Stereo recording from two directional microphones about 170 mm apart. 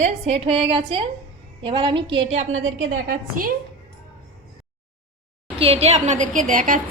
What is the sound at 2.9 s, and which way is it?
Speech, 55° right (ahead or behind).